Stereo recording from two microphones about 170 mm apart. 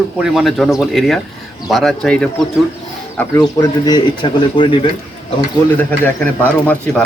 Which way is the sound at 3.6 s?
25° left (ahead or behind).